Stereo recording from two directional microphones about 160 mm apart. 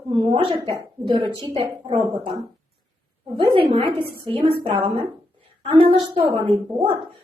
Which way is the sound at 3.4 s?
35° right (ahead or behind).